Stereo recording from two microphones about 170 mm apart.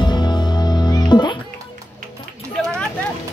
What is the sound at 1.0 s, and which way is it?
Music, 25° left (ahead or behind).